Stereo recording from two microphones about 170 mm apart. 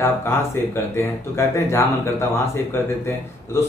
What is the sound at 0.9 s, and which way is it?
Speech, 15° left (ahead or behind).